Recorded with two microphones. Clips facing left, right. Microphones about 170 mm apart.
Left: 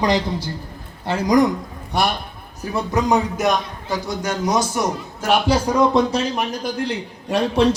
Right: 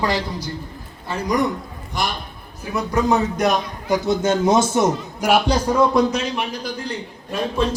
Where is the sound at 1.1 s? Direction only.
80° left.